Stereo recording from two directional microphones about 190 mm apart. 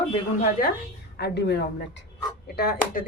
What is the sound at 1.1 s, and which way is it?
Speech, 60° left (ahead or behind).